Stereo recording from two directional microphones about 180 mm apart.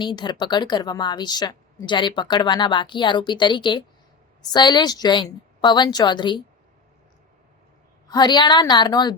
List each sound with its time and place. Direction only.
0.0 s a woman's voice: 25° left (ahead or behind)
8.0 s a woman's voice: 25° left (ahead or behind)